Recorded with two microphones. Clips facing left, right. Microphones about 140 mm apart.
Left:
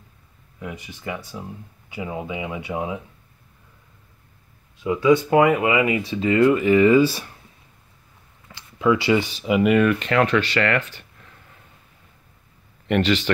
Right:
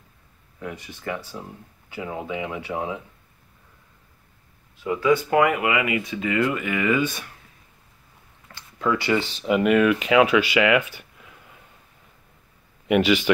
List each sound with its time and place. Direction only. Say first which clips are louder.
0.6 s speech: even; 15° left (ahead or behind)
4.7 s speech: left 3 dB; 20° left (ahead or behind)
8.7 s speech: left 4 dB; 20° left (ahead or behind)
9.3 s speech: left 1 dB; 5° left (ahead or behind)
12.8 s speech: right 1 dB; 10° right (ahead or behind)